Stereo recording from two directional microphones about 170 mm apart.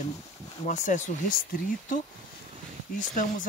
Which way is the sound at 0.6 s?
45° left (ahead or behind).